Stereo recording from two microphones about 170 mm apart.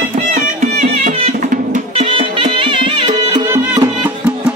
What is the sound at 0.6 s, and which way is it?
Music, 50° right (ahead or behind).